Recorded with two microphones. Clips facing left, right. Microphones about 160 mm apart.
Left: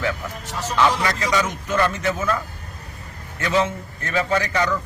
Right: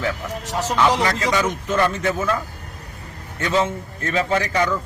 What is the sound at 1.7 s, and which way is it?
Speech, 10° right (ahead or behind).